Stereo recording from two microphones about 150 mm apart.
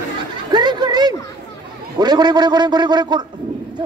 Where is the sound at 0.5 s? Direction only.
30° right (ahead or behind).